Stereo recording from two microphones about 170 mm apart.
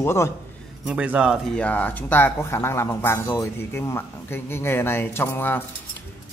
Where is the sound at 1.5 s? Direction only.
10° left (ahead or behind).